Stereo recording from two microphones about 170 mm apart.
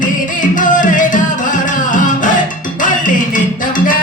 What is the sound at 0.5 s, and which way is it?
Music, 50° left (ahead or behind).